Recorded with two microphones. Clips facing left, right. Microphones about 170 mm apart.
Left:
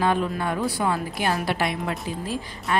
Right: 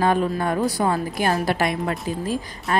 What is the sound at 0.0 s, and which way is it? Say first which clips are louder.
A woman's voice: right 3 dB; 45° right (ahead or behind).